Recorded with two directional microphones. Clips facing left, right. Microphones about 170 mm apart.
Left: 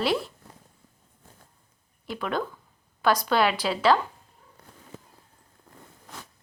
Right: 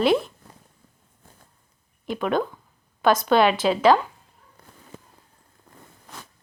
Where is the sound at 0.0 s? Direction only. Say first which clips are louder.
Right 6 dB; 20° right (ahead or behind).